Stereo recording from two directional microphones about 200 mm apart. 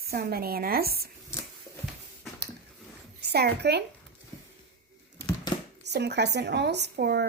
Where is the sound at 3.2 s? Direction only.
55° right (ahead or behind).